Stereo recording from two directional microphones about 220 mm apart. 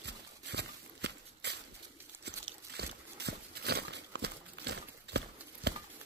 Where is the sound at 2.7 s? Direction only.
50° right (ahead or behind).